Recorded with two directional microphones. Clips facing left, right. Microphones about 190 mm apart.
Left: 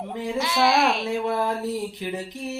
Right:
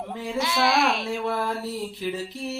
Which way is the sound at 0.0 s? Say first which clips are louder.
Left 3 dB; 20° left (ahead or behind).